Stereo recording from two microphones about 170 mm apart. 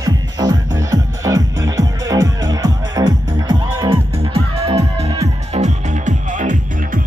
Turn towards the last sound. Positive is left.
turn(degrees=-45)  # may be behind; listen again after turning